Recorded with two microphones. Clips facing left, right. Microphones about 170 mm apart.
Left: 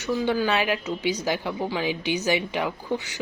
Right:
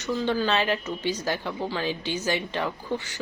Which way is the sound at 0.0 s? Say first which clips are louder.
Left 2 dB; 10° left (ahead or behind).